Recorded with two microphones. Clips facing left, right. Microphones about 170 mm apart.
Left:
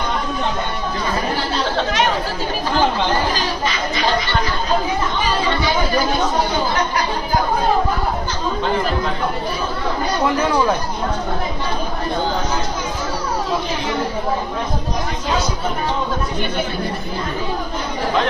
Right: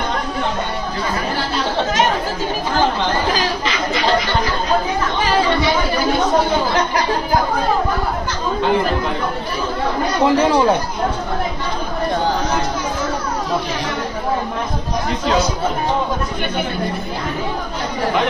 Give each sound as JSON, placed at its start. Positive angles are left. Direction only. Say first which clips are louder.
{"t": 10.2, "sound": "speech", "louder": "right 4 dB", "side_deg": -25}